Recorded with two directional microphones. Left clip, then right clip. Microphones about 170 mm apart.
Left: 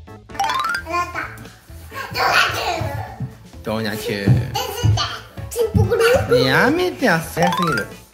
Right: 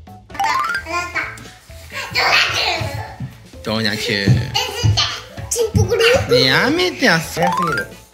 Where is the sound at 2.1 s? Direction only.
15° left (ahead or behind).